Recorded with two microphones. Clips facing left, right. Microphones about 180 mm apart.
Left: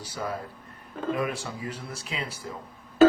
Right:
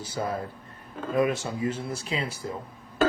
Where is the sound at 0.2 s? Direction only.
35° right (ahead or behind).